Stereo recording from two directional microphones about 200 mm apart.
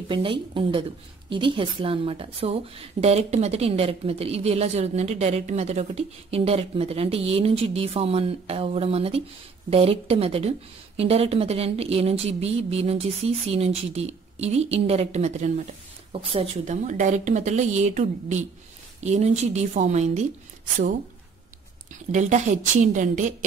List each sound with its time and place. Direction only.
0.1 s a woman's voice: 25° right (ahead or behind)
22.1 s a woman's voice: 35° right (ahead or behind)